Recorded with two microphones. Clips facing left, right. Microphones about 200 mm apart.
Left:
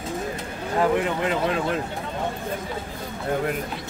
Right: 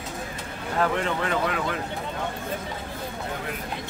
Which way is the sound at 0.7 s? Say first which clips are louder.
Left 3 dB; 15° left (ahead or behind).